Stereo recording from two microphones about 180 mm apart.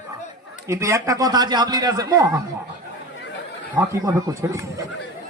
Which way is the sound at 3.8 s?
15° right (ahead or behind).